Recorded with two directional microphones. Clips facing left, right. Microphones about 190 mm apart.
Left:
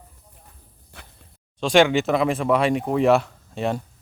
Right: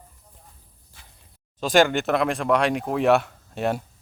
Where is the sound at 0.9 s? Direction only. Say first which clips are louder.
Left 9 dB; 65° left (ahead or behind).